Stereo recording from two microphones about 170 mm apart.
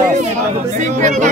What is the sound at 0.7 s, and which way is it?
Speech, 45° right (ahead or behind).